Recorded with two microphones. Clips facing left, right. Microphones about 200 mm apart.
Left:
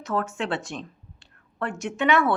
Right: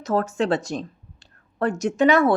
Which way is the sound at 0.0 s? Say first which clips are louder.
Right 5 dB; 40° right (ahead or behind).